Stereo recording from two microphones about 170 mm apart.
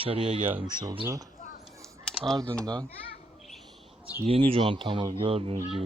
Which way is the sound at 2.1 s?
5° left (ahead or behind).